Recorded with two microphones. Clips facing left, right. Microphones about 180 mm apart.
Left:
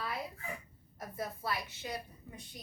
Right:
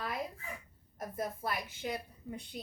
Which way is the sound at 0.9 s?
50° right (ahead or behind).